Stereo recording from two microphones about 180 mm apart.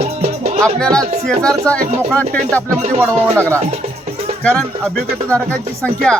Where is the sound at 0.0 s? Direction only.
35° right (ahead or behind).